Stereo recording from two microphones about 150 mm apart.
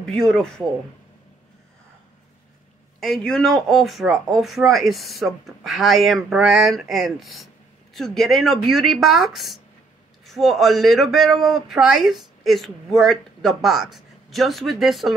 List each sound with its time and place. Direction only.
0.0 s a man's voice: 5° left (ahead or behind)
3.0 s a man's voice: 5° left (ahead or behind)